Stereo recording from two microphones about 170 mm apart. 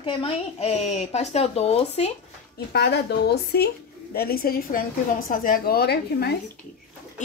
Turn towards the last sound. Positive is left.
turn(degrees=70)  # may be behind; listen again after turning